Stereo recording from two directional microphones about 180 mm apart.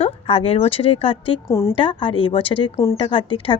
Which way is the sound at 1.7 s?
30° left (ahead or behind).